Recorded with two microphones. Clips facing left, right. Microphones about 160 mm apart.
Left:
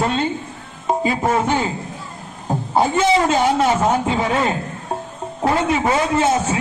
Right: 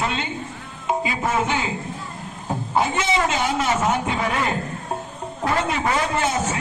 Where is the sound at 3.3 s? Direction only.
35° left (ahead or behind).